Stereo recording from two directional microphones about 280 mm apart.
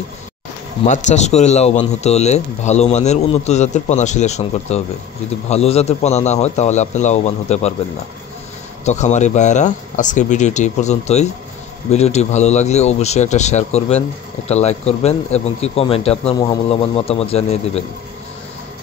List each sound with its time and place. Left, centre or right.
0.8 s speech: left
8.8 s speech: left